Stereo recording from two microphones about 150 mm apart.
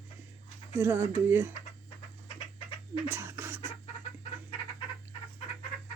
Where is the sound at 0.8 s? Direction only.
15° right (ahead or behind).